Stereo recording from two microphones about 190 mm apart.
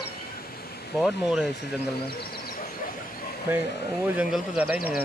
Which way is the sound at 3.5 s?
10° right (ahead or behind).